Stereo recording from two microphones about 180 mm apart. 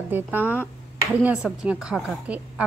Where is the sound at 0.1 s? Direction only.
10° right (ahead or behind).